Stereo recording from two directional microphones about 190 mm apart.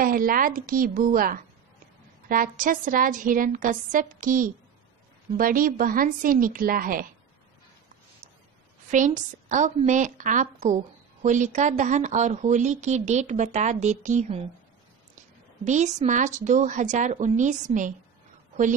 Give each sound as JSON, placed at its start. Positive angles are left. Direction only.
{"t": 0.0, "sound": "a woman's voice", "side_deg": -50}
{"t": 8.9, "sound": "speech", "side_deg": -40}
{"t": 15.6, "sound": "speech", "side_deg": -40}